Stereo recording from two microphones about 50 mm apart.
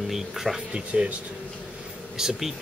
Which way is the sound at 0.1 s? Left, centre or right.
Centre.